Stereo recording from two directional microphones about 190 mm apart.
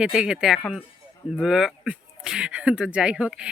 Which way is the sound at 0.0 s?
5° right (ahead or behind).